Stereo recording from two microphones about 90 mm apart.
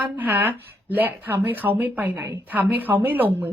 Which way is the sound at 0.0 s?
20° right (ahead or behind).